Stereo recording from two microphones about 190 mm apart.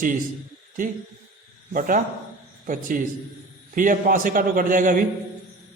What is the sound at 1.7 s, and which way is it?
A man's voice, 45° right (ahead or behind).